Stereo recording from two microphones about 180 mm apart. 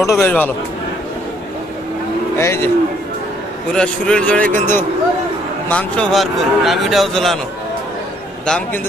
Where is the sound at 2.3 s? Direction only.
15° left (ahead or behind).